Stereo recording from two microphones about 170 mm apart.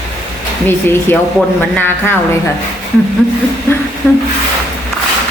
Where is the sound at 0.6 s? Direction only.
15° left (ahead or behind).